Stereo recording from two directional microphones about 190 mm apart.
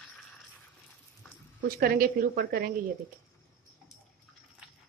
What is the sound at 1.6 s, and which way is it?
A woman's voice, 50° right (ahead or behind).